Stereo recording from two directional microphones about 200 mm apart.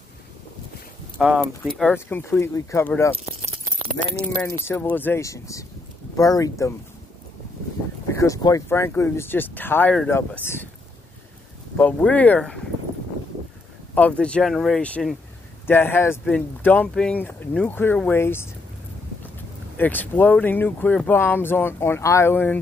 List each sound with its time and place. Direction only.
1.1 s speech: 5° right (ahead or behind)
1.6 s speech: 5° left (ahead or behind)
4.4 s speech: 10° left (ahead or behind)
8.2 s speech: 15° left (ahead or behind)
11.7 s speech: 10° left (ahead or behind)
14.2 s speech: 5° left (ahead or behind)
19.8 s speech: 10° left (ahead or behind)